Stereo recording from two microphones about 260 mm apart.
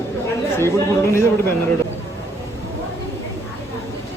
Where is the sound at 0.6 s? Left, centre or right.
Centre.